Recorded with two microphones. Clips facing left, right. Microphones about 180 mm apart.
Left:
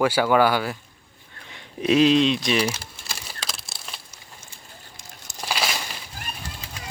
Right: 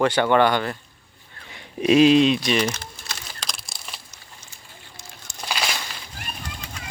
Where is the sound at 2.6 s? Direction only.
10° left (ahead or behind).